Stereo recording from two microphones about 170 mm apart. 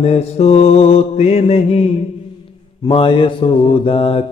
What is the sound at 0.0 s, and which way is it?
Mantra, 35° left (ahead or behind).